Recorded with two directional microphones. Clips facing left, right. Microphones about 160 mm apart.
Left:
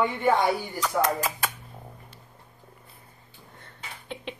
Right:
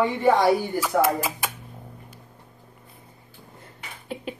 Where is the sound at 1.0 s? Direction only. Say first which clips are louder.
Right 3 dB; 10° right (ahead or behind).